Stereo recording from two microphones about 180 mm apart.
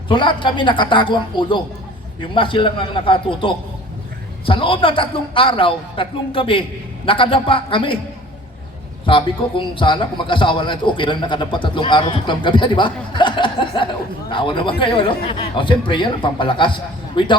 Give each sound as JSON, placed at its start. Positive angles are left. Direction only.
{"t": 0.1, "sound": "a man's voice", "side_deg": 25}
{"t": 9.0, "sound": "a man's voice", "side_deg": 30}